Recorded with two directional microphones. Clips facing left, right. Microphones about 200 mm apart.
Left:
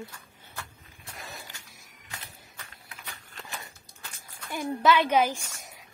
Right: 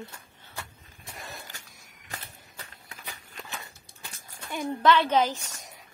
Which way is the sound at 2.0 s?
35° right (ahead or behind).